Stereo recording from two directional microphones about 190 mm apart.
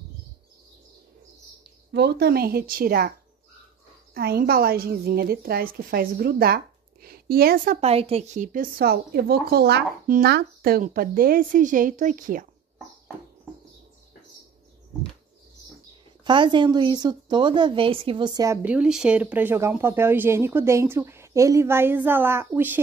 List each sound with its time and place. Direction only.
1.9 s a woman's voice: 60° right (ahead or behind)
4.1 s a woman's voice: 55° right (ahead or behind)
7.8 s a woman's voice: 30° right (ahead or behind)
16.3 s a woman's voice: 25° right (ahead or behind)